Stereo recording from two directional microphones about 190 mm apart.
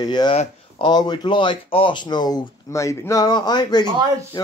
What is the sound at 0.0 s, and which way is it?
A man's voice, 20° left (ahead or behind).